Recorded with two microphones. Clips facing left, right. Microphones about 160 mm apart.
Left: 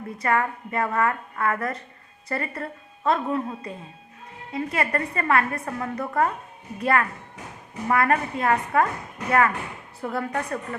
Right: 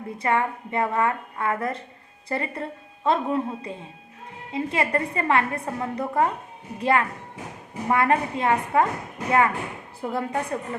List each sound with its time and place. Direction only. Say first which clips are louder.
0.2 s a woman's voice: even; 25° right (ahead or behind)